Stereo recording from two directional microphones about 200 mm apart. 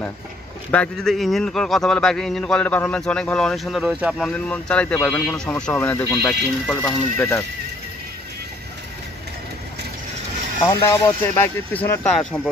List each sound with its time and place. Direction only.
0.7 s a man's voice: 5° left (ahead or behind)
10.6 s speech: 20° left (ahead or behind)